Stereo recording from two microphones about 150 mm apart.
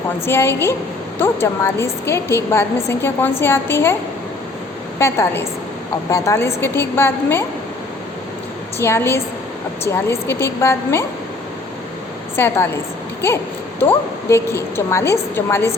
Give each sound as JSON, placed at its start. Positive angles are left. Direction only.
{"t": 0.3, "sound": "a woman's voice", "side_deg": 15}
{"t": 4.9, "sound": "a woman's voice", "side_deg": 20}
{"t": 8.8, "sound": "a woman's voice", "side_deg": 15}
{"t": 12.4, "sound": "a woman's voice", "side_deg": 15}